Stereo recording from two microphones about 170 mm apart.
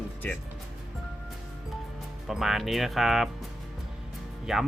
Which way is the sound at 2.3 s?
Centre (ahead or behind).